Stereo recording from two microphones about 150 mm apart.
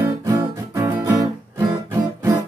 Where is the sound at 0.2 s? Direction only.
20° right (ahead or behind).